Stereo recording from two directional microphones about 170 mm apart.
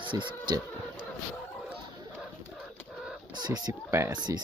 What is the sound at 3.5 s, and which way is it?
Speech, 20° right (ahead or behind).